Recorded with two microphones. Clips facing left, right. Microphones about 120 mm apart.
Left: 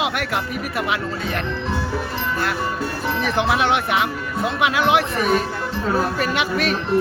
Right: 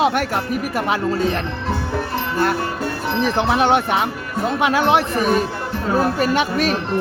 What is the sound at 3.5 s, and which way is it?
Speech, 35° right (ahead or behind).